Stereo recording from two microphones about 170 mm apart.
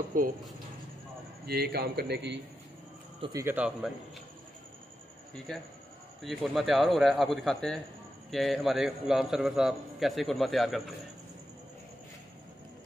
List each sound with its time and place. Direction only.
0.1 s speech: 50° right (ahead or behind)
1.4 s a man's voice: 70° right (ahead or behind); by 2.4 s 85° right
3.3 s a man's voice: 10° right (ahead or behind)
5.5 s a man's voice: 5° left (ahead or behind)